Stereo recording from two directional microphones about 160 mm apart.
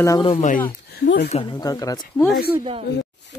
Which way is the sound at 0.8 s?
85° left.